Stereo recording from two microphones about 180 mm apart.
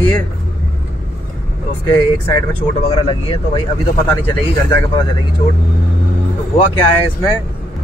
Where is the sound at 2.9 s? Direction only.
30° left (ahead or behind).